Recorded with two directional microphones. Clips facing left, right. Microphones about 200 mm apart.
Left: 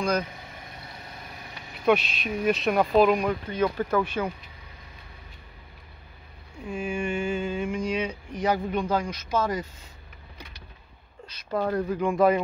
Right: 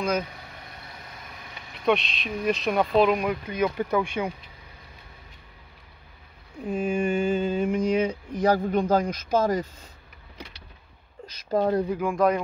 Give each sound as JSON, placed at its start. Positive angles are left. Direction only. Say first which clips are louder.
{"t": 1.9, "sound": "speech", "louder": "left 1 dB", "side_deg": 5}
{"t": 6.6, "sound": "a sound", "louder": "right 4 dB", "side_deg": -40}
{"t": 8.5, "sound": "speech", "louder": "right 4 dB", "side_deg": -40}
{"t": 11.5, "sound": "speech", "louder": "right 4 dB", "side_deg": -25}
{"t": 12.0, "sound": "speech", "louder": "left 5 dB", "side_deg": 0}